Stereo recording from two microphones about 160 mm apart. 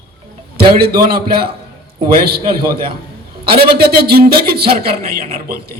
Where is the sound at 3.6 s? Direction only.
75° right (ahead or behind).